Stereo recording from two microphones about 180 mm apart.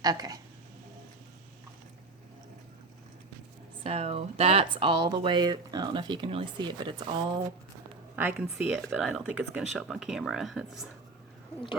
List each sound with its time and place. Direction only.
0.0 s speech: 20° right (ahead or behind)
3.8 s speech: 35° right (ahead or behind)
8.1 s speech: 10° right (ahead or behind)